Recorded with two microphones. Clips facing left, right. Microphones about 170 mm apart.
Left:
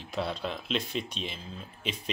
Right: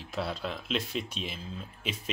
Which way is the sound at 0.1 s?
5° right (ahead or behind).